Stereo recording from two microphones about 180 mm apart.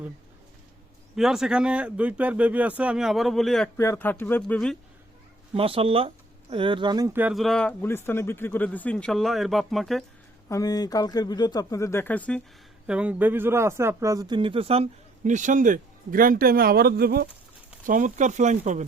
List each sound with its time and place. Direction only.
1.1 s a man's voice: centre (ahead or behind)
3.8 s speech: 15° left (ahead or behind)
5.5 s speech: 30° right (ahead or behind)
7.1 s speech: 10° right (ahead or behind)
7.3 s a man's voice: centre (ahead or behind)
10.5 s speech: 20° left (ahead or behind)
12.9 s speech: 5° right (ahead or behind); by 17.2 s 60° right (ahead or behind)
17.8 s speech: 45° right (ahead or behind)